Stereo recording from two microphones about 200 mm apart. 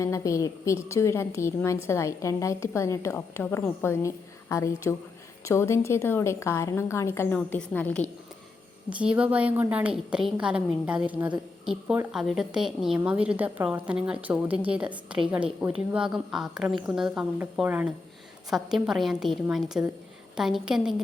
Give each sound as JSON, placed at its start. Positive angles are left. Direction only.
{"t": 0.0, "sound": "a woman's voice", "side_deg": 15}
{"t": 8.9, "sound": "a woman's voice", "side_deg": -5}